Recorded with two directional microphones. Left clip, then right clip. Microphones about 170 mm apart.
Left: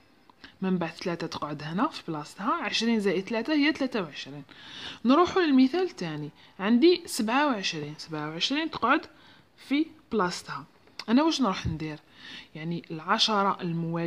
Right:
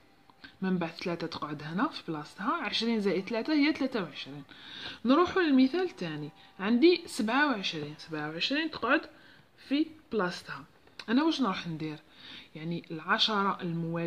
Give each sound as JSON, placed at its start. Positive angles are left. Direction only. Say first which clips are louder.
{"t": 0.4, "sound": "speech", "louder": "left 3 dB", "side_deg": 30}